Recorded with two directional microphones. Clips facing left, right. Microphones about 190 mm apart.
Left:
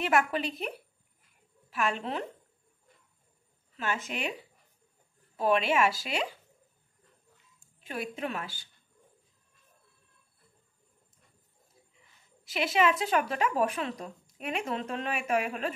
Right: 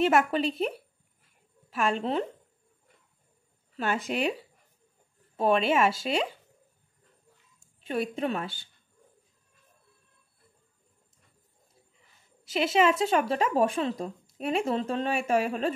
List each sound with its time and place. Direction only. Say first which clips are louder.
0.0 s speech: right 4 dB; 30° right (ahead or behind)
3.7 s speech: right 5 dB; 35° right (ahead or behind)
7.8 s speech: right 6 dB; 30° right (ahead or behind)
12.5 s speech: right 3 dB; 30° right (ahead or behind)